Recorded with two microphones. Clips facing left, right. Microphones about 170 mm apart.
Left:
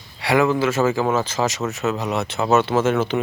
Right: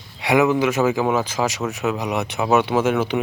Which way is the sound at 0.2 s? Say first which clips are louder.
Right 1 dB; 20° right (ahead or behind).